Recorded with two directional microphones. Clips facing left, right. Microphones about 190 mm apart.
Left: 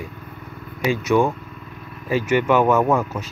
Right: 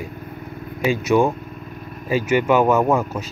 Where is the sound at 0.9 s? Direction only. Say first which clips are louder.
Right 1 dB; 15° right (ahead or behind).